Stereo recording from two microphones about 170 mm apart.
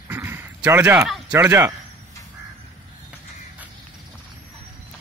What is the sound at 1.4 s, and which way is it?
Speech, 15° right (ahead or behind).